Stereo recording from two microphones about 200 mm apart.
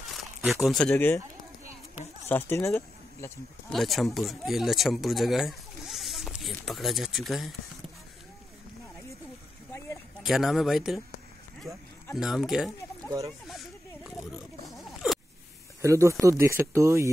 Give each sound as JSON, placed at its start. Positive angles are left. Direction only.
{"t": 0.1, "sound": "speech", "side_deg": 0}
{"t": 2.2, "sound": "speech", "side_deg": 10}
{"t": 3.7, "sound": "speech", "side_deg": 0}
{"t": 9.7, "sound": "a sound", "side_deg": 10}
{"t": 10.2, "sound": "speech", "side_deg": 0}
{"t": 11.7, "sound": "speech", "side_deg": -15}
{"t": 12.1, "sound": "speech", "side_deg": 0}
{"t": 13.5, "sound": "oink", "side_deg": 0}
{"t": 15.8, "sound": "speech", "side_deg": -15}